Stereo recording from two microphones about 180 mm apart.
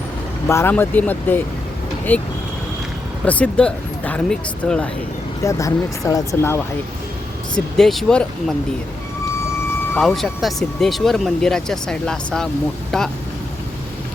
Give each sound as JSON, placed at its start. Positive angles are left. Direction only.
{"t": 0.4, "sound": "speech", "side_deg": 15}
{"t": 3.2, "sound": "speech", "side_deg": 5}
{"t": 5.4, "sound": "speech", "side_deg": 15}
{"t": 7.5, "sound": "speech", "side_deg": 0}
{"t": 9.9, "sound": "speech", "side_deg": 0}